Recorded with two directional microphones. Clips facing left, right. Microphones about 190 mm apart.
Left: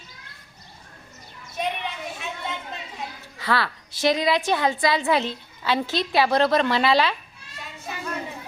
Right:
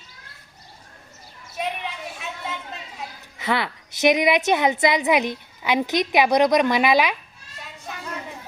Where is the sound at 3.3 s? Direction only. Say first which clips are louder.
Right 1 dB; 20° right (ahead or behind).